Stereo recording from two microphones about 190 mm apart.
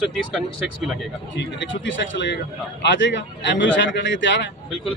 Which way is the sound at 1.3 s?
75° left (ahead or behind).